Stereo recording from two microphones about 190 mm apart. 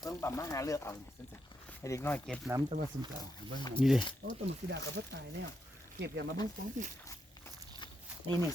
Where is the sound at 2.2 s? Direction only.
Centre (ahead or behind).